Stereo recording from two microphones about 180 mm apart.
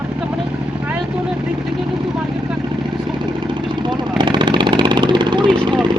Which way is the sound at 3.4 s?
25° right (ahead or behind).